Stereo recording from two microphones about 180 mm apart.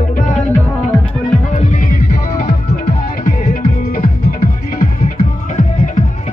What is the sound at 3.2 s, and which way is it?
Music, 45° left (ahead or behind).